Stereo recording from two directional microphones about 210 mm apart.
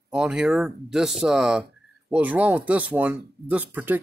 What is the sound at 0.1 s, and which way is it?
Speech, 5° right (ahead or behind).